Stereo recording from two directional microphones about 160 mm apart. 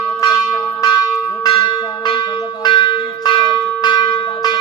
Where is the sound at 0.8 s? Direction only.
20° left (ahead or behind).